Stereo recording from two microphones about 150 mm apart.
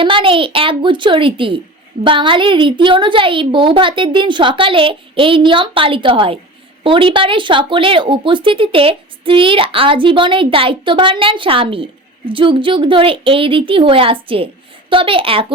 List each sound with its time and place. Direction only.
0.0 s speech: 35° right (ahead or behind)